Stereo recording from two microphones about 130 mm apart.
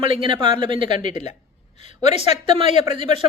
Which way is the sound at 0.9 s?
65° left (ahead or behind).